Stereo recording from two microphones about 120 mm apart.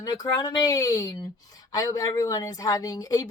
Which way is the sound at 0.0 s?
30° left (ahead or behind).